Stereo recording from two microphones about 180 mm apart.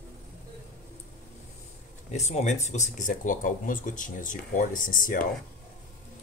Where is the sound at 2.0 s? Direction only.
40° left (ahead or behind).